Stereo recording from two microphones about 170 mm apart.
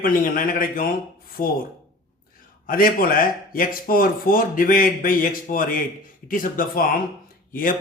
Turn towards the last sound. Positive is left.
turn(degrees=55)  # may be behind; listen again after turning